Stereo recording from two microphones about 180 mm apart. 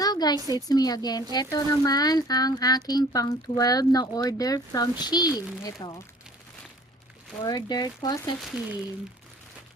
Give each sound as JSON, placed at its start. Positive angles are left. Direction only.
{"t": 0.0, "sound": "a sound", "side_deg": 20}
{"t": 0.5, "sound": "speech", "side_deg": 20}
{"t": 7.4, "sound": "speech", "side_deg": 20}
{"t": 8.4, "sound": "speech", "side_deg": -5}